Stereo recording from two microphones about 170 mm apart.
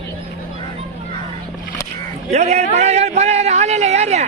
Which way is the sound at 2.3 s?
40° right (ahead or behind).